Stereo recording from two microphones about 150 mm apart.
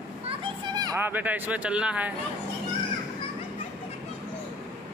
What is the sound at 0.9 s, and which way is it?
Speech, 15° right (ahead or behind).